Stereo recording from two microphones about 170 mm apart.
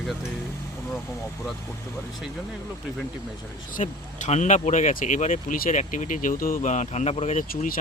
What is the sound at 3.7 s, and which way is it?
Speech, 45° left (ahead or behind).